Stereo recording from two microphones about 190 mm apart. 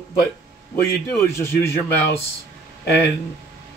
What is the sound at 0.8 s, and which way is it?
Speech, 15° left (ahead or behind).